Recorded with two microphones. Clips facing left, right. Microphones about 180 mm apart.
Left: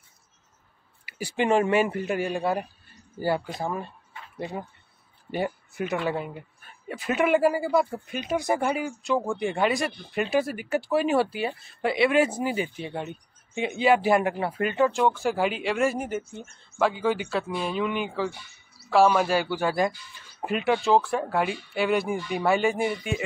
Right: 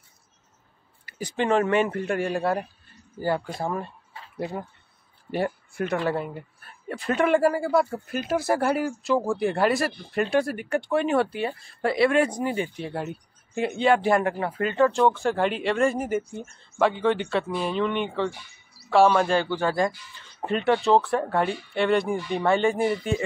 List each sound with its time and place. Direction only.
1.0 s speech: 10° left (ahead or behind)
12.4 s speech: 30° right (ahead or behind)
12.7 s speech: centre (ahead or behind)